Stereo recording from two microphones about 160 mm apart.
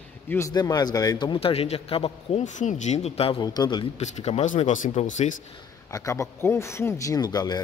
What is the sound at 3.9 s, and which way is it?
Speech, 45° left (ahead or behind).